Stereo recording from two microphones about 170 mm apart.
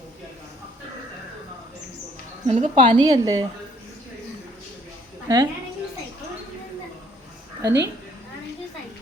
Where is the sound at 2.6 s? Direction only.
45° right (ahead or behind).